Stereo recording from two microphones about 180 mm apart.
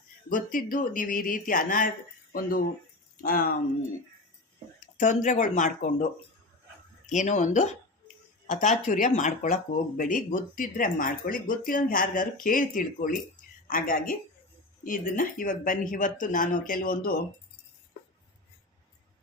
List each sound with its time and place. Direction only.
0.3 s speech: 50° left (ahead or behind)
3.2 s speech: 50° left (ahead or behind)
4.9 s speech: 45° left (ahead or behind)
7.1 s speech: 40° left (ahead or behind)